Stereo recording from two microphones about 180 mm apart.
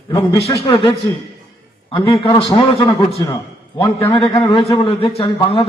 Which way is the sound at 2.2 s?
20° left (ahead or behind).